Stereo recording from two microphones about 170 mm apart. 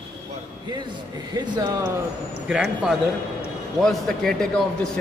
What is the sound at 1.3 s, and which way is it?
Speech, 25° right (ahead or behind).